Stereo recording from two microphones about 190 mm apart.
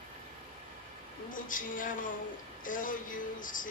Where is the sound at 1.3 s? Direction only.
45° left (ahead or behind).